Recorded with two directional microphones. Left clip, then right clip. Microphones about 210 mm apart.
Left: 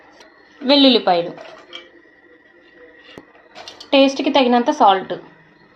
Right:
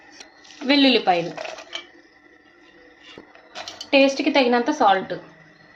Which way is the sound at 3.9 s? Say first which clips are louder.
Left 3 dB; 25° left (ahead or behind).